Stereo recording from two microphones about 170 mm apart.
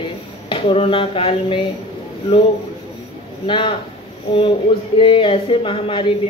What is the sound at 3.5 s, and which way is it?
Speech, 30° left (ahead or behind).